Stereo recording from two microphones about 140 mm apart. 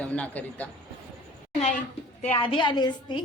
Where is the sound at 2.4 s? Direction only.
35° left (ahead or behind).